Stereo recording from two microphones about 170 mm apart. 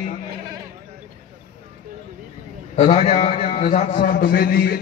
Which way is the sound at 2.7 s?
40° left (ahead or behind).